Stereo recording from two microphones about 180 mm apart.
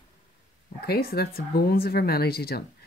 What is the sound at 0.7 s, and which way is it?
Speech, 60° left (ahead or behind).